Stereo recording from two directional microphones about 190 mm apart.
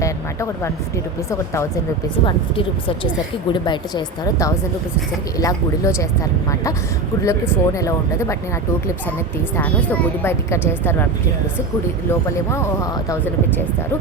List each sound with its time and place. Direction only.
0.0 s a sound: 15° left (ahead or behind)
1.3 s a woman's voice: 15° left (ahead or behind)
2.2 s a woman's voice: 25° left (ahead or behind)
7.3 s a woman's voice: 15° left (ahead or behind)
9.6 s a woman's voice: 10° left (ahead or behind)
12.5 s a woman's voice: 15° left (ahead or behind)